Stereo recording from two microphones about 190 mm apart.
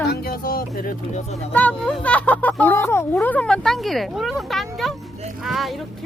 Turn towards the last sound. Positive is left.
turn(degrees=0)  # may be behind; listen again after turning